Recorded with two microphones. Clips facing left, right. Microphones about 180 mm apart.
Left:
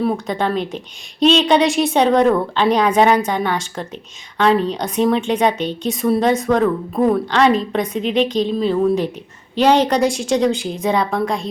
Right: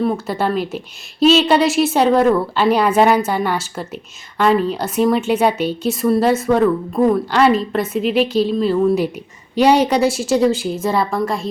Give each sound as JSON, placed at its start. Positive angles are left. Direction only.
{"t": 0.0, "sound": "a woman's voice", "side_deg": 0}